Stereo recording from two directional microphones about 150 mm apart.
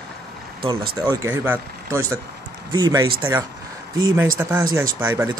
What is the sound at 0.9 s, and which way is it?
Speech, 25° right (ahead or behind).